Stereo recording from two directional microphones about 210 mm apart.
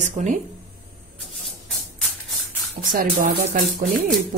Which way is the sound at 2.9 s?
40° right (ahead or behind).